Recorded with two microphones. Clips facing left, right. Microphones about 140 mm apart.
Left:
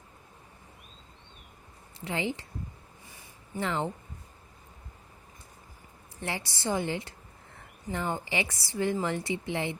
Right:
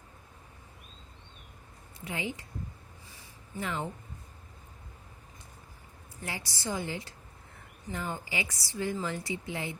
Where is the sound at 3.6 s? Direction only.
75° left (ahead or behind).